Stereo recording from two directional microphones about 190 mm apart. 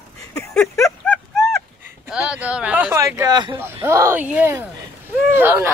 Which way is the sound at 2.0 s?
5° right (ahead or behind).